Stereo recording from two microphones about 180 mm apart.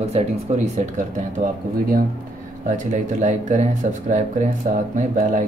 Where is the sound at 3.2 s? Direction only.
40° right (ahead or behind).